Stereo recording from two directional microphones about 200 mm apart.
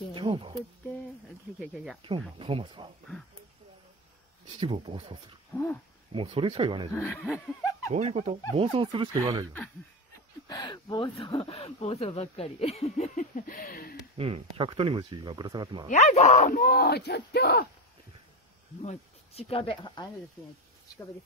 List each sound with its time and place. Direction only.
0.1 s a sound: 25° right (ahead or behind)
1.6 s speech: centre (ahead or behind)
2.0 s speech: 25° right (ahead or behind)
4.6 s speech: 25° right (ahead or behind)
5.5 s dog: 10° left (ahead or behind)
6.1 s speech: 30° right (ahead or behind)
7.0 s speech: 10° left (ahead or behind)
7.3 s snicker: 15° left (ahead or behind)
7.9 s speech: 35° right (ahead or behind)
8.8 s speech: 25° right (ahead or behind)
10.5 s speech: 20° left (ahead or behind); by 13.9 s 45° left (ahead or behind)
14.1 s speech: 30° right (ahead or behind)
15.9 s speech: 35° left (ahead or behind); by 17.6 s 50° left (ahead or behind)
18.8 s speech: 30° left (ahead or behind)